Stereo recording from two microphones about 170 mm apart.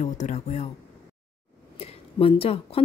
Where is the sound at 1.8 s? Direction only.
35° left (ahead or behind).